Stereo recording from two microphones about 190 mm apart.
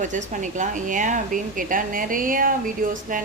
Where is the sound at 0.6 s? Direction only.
40° right (ahead or behind).